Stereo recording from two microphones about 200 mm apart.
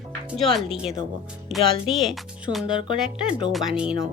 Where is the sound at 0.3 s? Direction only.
Centre (ahead or behind).